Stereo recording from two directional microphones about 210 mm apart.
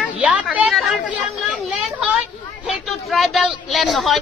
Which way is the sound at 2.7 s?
Centre (ahead or behind).